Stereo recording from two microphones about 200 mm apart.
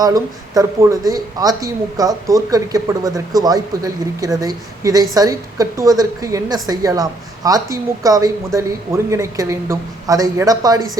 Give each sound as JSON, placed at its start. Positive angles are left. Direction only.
{"t": 0.0, "sound": "speech", "side_deg": -15}